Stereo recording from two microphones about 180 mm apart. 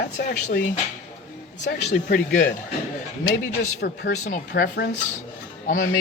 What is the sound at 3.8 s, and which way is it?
Speech, 65° left (ahead or behind).